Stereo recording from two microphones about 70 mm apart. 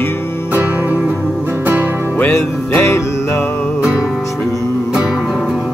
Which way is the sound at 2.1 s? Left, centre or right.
Left.